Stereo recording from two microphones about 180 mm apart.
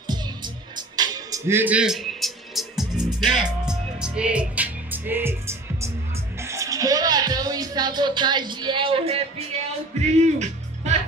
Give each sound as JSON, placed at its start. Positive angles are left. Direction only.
{"t": 0.9, "sound": "music", "side_deg": -20}
{"t": 6.4, "sound": "speech", "side_deg": -15}
{"t": 10.1, "sound": "music", "side_deg": -40}